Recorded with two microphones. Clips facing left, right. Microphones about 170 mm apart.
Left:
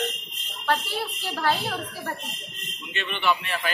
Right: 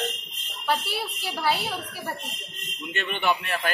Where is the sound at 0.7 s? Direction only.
10° right (ahead or behind).